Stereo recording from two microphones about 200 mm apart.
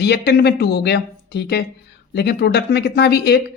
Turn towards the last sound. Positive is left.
turn(degrees=55)  # may be behind; listen again after turning